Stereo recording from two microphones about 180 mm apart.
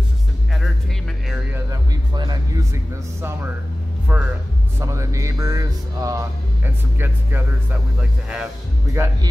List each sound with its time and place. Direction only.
1.7 s music: 25° right (ahead or behind)
4.1 s speech: 5° right (ahead or behind)